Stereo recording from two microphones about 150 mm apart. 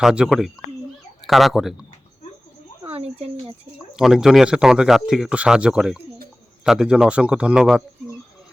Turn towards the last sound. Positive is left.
turn(degrees=-5)  # may be behind; listen again after turning